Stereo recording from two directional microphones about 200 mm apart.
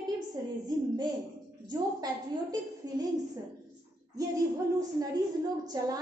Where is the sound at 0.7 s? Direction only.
20° right (ahead or behind).